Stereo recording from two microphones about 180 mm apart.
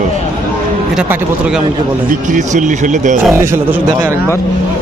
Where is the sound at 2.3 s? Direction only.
45° right (ahead or behind).